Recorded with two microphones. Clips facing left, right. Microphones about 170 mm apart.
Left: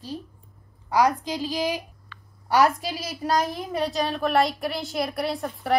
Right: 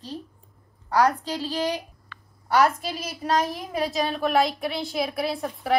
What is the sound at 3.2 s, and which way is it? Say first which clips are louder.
Speech: even; centre (ahead or behind).